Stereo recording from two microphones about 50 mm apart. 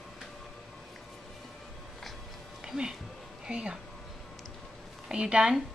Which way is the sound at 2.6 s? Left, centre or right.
Centre.